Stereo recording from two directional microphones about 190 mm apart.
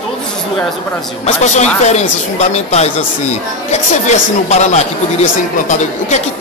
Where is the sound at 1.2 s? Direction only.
35° left (ahead or behind).